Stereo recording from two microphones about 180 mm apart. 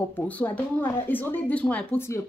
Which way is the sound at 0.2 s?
10° left (ahead or behind).